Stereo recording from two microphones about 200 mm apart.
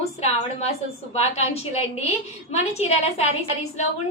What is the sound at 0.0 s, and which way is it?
A woman's voice, 30° left (ahead or behind).